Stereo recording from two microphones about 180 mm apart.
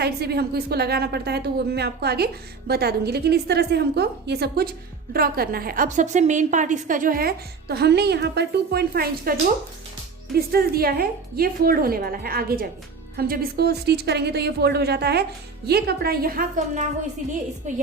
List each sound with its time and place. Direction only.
0.0 s a woman's voice: 65° right (ahead or behind)
10.3 s a woman's voice: 60° right (ahead or behind)